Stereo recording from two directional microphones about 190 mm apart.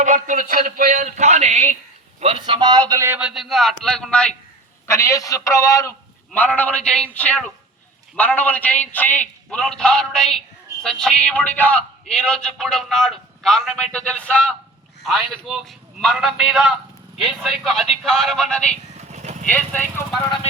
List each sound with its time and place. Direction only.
0.0 s a sound: 40° right (ahead or behind)
2.2 s a man's voice: 25° right (ahead or behind); by 4.3 s 5° left (ahead or behind)
4.9 s a man's voice: 15° left (ahead or behind)
18.9 s vehicle: 35° right (ahead or behind)
19.5 s a man's voice: 10° left (ahead or behind)